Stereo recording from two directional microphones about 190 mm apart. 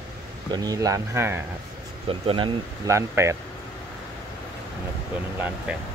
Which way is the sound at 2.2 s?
25° right (ahead or behind).